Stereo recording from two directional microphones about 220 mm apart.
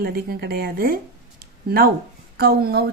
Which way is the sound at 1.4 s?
45° right (ahead or behind).